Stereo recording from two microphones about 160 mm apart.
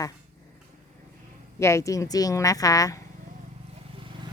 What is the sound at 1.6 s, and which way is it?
Speech, 20° left (ahead or behind).